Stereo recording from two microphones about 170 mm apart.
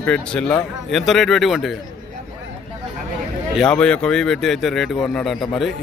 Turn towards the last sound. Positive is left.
turn(degrees=0)  # may be behind; listen again after turning